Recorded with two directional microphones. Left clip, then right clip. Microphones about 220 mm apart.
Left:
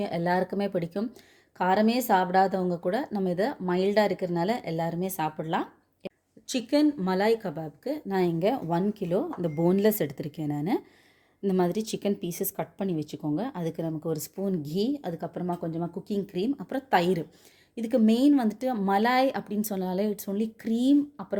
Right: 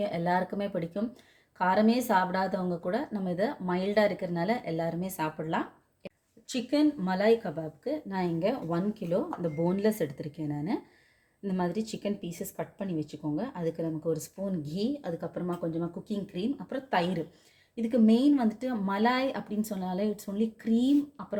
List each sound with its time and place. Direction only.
0.0 s speech: 40° left (ahead or behind)